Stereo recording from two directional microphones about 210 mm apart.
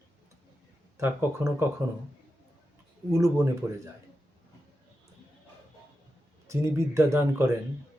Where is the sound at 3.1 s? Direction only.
15° right (ahead or behind).